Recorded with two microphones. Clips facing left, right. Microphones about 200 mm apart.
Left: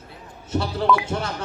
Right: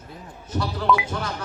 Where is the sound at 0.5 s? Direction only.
25° left (ahead or behind).